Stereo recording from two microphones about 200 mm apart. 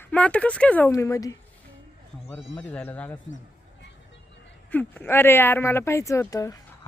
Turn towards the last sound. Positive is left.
turn(degrees=15)  # may be behind; listen again after turning